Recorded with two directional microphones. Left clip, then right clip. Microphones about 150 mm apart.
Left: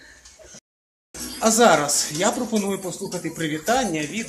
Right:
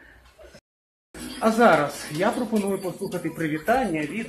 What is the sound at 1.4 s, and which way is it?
Speech, 25° left (ahead or behind).